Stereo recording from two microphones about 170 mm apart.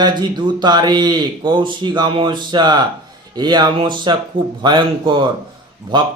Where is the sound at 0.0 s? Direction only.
25° right (ahead or behind).